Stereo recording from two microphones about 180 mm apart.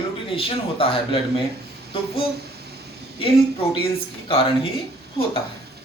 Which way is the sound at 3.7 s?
30° left (ahead or behind).